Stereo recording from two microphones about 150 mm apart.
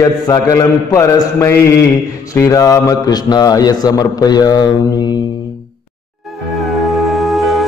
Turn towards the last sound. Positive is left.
turn(degrees=0)  # may be behind; listen again after turning